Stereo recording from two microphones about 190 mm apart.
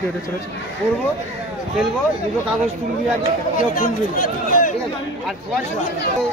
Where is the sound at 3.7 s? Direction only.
45° left (ahead or behind).